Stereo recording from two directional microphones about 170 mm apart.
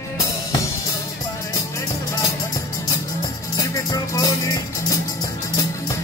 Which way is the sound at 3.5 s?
20° left (ahead or behind).